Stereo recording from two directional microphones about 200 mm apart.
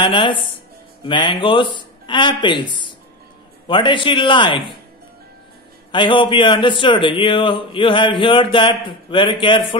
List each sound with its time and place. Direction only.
0.0 s speech: 25° left (ahead or behind)
5.9 s speech: 25° left (ahead or behind)